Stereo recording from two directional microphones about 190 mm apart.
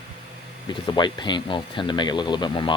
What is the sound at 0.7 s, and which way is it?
Speech, 25° left (ahead or behind).